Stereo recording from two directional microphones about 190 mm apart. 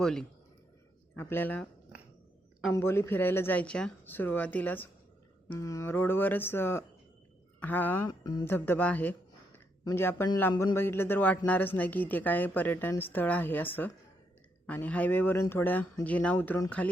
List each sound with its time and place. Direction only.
0.0 s speech: 5° left (ahead or behind)
2.7 s speech: 15° left (ahead or behind)
8.2 s speech: 20° left (ahead or behind)
10.5 s speech: 25° left (ahead or behind)
10.8 s speech: 10° left (ahead or behind)